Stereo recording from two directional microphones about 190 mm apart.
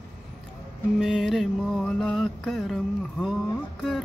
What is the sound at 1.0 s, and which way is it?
Mantra, 5° right (ahead or behind).